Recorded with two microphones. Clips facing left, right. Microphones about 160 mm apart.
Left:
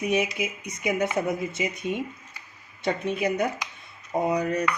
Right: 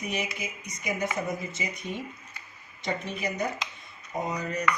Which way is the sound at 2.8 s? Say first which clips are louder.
Left 6 dB; 60° left (ahead or behind).